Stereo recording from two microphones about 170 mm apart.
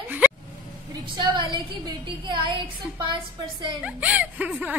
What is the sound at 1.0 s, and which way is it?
A woman's voice, 25° right (ahead or behind).